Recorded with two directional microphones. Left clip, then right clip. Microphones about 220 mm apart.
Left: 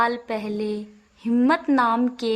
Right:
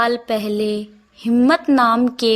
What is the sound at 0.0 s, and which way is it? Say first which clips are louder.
A woman's voice: right 5 dB; 10° right (ahead or behind).